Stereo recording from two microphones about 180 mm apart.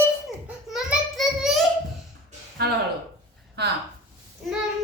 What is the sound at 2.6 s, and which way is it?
Speech, 60° right (ahead or behind).